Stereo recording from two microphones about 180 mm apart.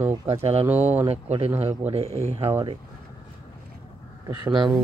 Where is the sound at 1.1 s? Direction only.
35° right (ahead or behind).